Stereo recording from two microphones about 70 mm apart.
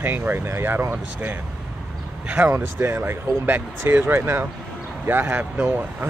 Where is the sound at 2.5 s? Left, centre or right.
Right.